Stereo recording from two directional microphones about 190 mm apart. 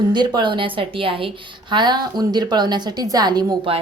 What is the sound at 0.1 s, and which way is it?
A woman's voice, 25° right (ahead or behind).